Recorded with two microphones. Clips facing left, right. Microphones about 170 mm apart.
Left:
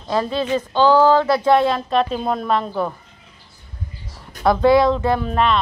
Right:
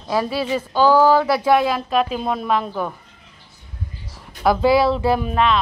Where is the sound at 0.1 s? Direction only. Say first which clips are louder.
Left 1 dB; 10° right (ahead or behind).